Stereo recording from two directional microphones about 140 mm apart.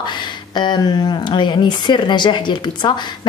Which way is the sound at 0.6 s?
30° left (ahead or behind).